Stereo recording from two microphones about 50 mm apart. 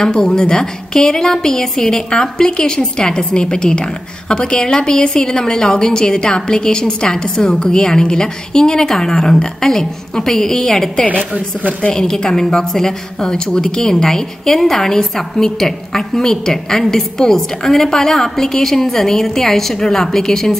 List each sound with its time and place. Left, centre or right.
0.0 s a woman's voice: centre
11.1 s a woman's voice: right
11.9 s a woman's voice: centre